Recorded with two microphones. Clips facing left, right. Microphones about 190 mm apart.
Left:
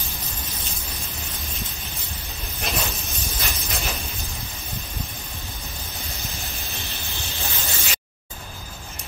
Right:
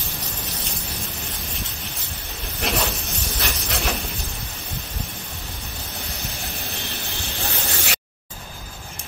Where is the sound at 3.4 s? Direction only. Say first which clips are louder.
Right 4 dB; 60° right (ahead or behind).